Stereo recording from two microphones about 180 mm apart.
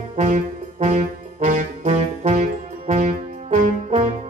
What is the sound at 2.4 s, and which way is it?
Music, 45° right (ahead or behind).